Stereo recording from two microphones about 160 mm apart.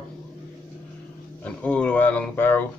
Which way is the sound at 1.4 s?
10° left (ahead or behind).